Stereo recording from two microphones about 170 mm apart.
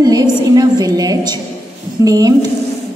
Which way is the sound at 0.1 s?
20° right (ahead or behind).